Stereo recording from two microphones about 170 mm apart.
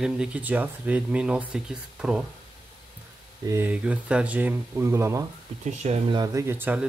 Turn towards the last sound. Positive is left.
turn(degrees=-10)  # may be behind; listen again after turning